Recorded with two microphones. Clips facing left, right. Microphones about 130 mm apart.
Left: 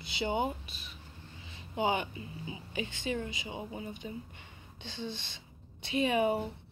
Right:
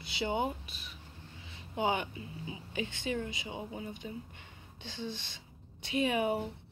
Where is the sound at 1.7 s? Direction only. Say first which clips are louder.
Left 1 dB; 10° left (ahead or behind).